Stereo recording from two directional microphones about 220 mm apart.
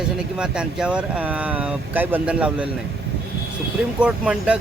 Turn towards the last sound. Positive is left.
turn(degrees=-5)  # may be behind; listen again after turning